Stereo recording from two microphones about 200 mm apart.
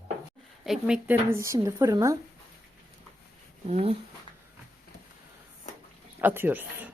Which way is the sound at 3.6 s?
30° right (ahead or behind).